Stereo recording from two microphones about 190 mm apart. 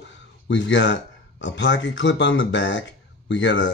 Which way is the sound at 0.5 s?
75° left (ahead or behind).